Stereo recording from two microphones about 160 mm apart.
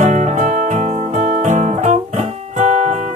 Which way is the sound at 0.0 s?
50° right (ahead or behind).